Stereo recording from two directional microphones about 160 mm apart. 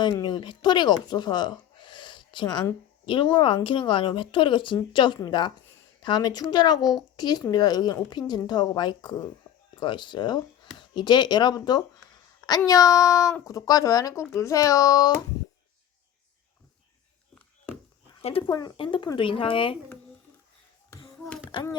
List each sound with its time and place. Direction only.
0.0 s a woman's voice: 30° left (ahead or behind)
18.2 s speech: 35° left (ahead or behind)
21.5 s a woman's voice: 25° left (ahead or behind)